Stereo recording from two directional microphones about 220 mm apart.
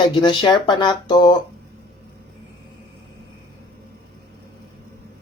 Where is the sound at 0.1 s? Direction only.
20° left (ahead or behind).